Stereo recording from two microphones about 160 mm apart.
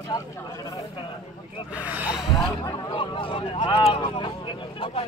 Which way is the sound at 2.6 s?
30° left (ahead or behind).